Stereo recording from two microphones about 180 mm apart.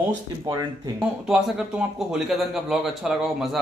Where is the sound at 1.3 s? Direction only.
5° right (ahead or behind).